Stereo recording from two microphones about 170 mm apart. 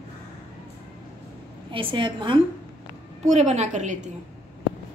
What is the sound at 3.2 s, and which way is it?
Speech, 40° right (ahead or behind).